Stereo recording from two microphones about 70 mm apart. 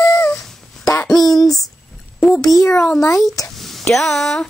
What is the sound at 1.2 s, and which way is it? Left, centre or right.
Speech, left.